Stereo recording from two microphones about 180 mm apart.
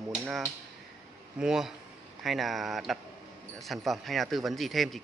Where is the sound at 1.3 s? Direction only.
5° right (ahead or behind).